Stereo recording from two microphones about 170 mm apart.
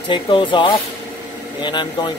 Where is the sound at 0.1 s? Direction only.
30° left (ahead or behind).